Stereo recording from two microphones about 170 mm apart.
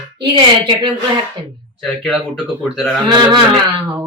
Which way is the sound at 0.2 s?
30° right (ahead or behind).